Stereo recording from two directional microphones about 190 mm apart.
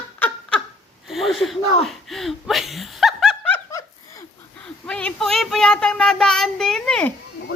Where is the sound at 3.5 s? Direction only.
15° left (ahead or behind).